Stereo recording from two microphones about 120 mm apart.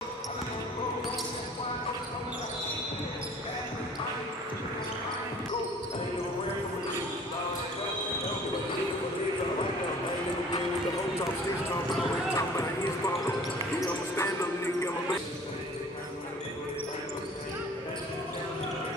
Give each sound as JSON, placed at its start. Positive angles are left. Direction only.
{"t": 12.4, "sound": "clip-clop", "side_deg": 25}